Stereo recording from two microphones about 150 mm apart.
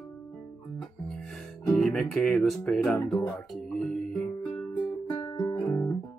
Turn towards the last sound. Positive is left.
turn(degrees=20)  # may be behind; listen again after turning